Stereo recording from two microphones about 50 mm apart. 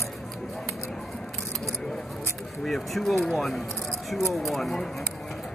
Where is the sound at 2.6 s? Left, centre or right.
Centre.